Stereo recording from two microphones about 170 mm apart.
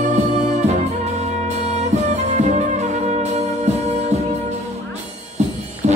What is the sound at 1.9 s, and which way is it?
Music, 40° right (ahead or behind).